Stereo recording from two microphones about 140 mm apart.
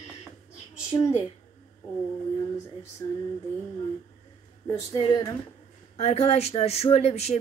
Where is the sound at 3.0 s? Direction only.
20° left (ahead or behind).